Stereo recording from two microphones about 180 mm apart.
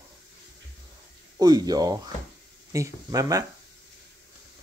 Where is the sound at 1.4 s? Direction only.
20° right (ahead or behind).